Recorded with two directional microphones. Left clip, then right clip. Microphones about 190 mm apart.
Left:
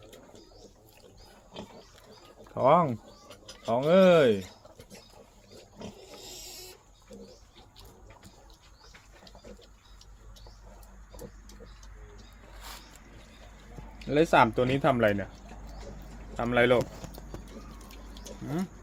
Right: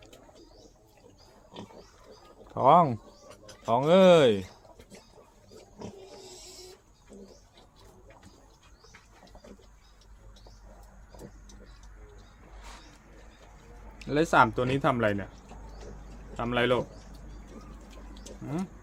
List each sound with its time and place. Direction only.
2.6 s speech: 15° right (ahead or behind)
14.0 s speech: centre (ahead or behind)
16.4 s speech: centre (ahead or behind)